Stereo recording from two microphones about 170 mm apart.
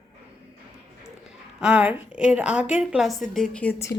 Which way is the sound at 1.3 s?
5° right (ahead or behind).